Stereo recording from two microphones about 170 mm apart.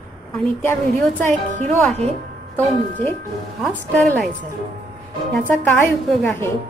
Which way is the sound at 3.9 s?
5° left (ahead or behind).